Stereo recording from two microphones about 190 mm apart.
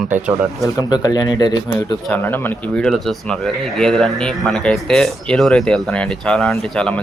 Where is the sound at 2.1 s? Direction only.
10° left (ahead or behind).